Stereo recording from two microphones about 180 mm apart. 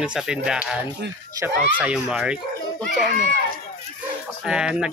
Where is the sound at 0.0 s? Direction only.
5° right (ahead or behind).